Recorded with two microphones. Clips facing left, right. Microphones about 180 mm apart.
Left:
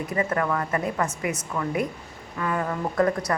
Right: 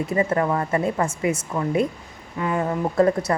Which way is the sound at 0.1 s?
25° right (ahead or behind).